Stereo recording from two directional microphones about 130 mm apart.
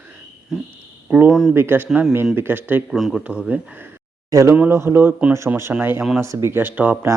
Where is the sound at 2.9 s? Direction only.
Centre (ahead or behind).